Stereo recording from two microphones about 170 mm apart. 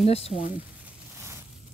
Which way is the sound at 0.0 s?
35° left (ahead or behind).